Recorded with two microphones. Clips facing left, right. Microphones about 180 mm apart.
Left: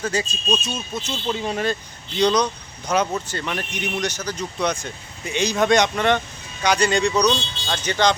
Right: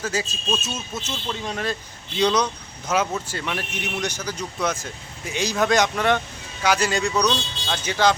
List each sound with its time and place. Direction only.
0.0 s speech: 5° right (ahead or behind)
1.1 s speech: 10° left (ahead or behind)
2.1 s speech: 5° right (ahead or behind)
7.1 s speech: 15° left (ahead or behind)
7.7 s speech: 5° right (ahead or behind)